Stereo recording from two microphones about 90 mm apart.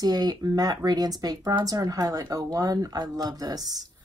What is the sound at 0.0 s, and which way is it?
Speech, 50° right (ahead or behind).